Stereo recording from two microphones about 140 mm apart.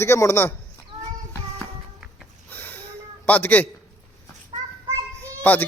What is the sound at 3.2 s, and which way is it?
Speech, 10° left (ahead or behind).